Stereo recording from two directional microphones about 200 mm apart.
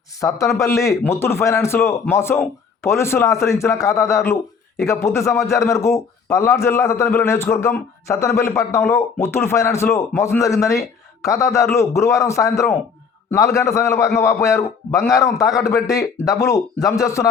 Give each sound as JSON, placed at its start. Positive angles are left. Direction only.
{"t": 0.2, "sound": "a man's voice", "side_deg": 15}